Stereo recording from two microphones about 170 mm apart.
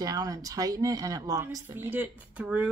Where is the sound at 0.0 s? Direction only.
20° right (ahead or behind).